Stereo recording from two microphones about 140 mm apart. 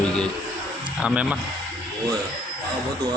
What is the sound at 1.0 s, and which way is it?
Speech, 10° right (ahead or behind).